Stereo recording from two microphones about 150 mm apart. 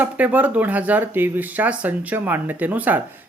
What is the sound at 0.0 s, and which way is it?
Speech, 10° right (ahead or behind).